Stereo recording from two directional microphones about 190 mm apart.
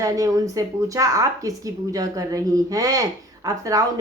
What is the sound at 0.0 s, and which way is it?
Speech, 15° right (ahead or behind).